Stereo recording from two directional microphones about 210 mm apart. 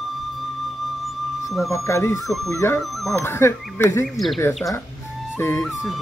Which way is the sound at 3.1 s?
10° left (ahead or behind).